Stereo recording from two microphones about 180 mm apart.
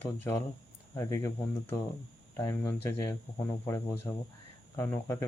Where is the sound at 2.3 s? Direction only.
15° left (ahead or behind).